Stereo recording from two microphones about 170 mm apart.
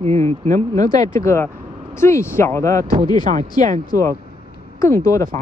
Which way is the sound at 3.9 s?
20° left (ahead or behind).